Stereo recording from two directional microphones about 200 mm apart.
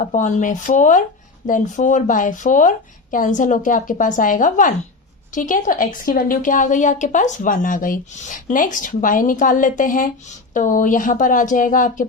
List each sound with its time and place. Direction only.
0.0 s a woman's voice: 40° left (ahead or behind)